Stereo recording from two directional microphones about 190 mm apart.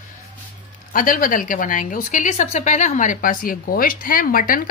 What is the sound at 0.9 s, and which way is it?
A woman's voice, 45° left (ahead or behind).